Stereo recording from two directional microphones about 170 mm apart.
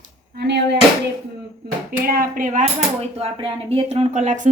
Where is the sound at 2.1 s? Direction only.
55° right (ahead or behind).